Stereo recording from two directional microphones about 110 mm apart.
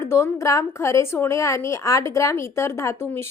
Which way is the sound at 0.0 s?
25° left (ahead or behind).